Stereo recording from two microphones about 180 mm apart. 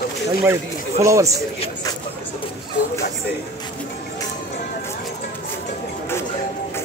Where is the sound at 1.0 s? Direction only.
15° right (ahead or behind).